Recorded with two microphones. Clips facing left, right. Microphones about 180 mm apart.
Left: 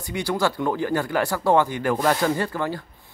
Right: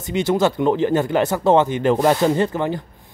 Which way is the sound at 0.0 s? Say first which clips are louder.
Right 6 dB; 20° right (ahead or behind).